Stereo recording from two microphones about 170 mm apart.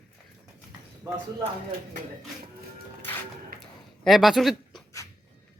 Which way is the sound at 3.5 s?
60° right (ahead or behind).